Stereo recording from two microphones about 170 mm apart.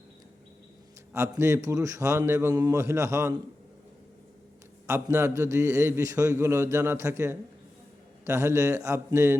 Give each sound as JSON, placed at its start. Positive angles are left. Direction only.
{"t": 1.1, "sound": "a man's voice", "side_deg": -15}
{"t": 4.9, "sound": "a man's voice", "side_deg": -15}